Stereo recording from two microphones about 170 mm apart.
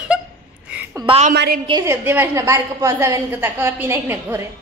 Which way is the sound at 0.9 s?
30° right (ahead or behind).